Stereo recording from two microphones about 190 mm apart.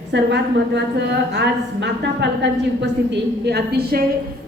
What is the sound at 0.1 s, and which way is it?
A woman's voice, 65° right (ahead or behind).